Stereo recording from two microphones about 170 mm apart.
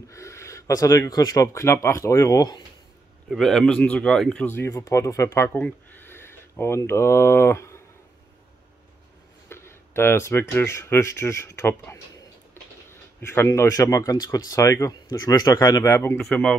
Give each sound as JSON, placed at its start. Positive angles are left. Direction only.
{"t": 0.1, "sound": "speech", "side_deg": 15}
{"t": 3.3, "sound": "speech", "side_deg": 0}
{"t": 9.5, "sound": "speech", "side_deg": 15}
{"t": 13.3, "sound": "speech", "side_deg": 15}
{"t": 16.2, "sound": "speech", "side_deg": 5}